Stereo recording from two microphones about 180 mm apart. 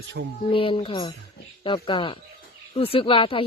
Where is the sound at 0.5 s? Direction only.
30° left (ahead or behind).